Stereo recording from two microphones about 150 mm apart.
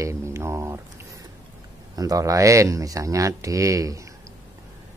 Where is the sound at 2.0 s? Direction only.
25° right (ahead or behind).